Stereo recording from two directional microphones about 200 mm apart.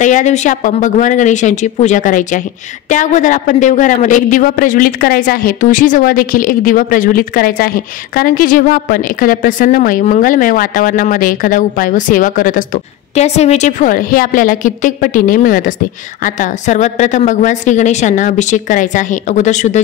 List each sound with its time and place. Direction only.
0.0 s a woman's voice: 35° left (ahead or behind)